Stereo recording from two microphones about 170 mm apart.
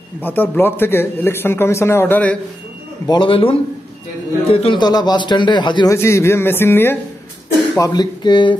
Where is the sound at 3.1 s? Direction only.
30° left (ahead or behind).